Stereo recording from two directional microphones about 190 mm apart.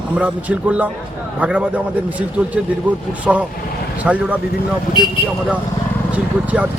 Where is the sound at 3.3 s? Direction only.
Centre (ahead or behind).